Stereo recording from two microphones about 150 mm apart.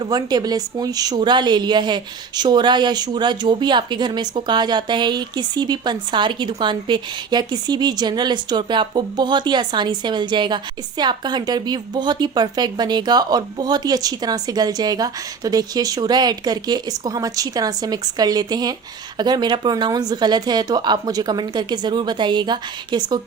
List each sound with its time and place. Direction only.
0.0 s speech: 25° right (ahead or behind)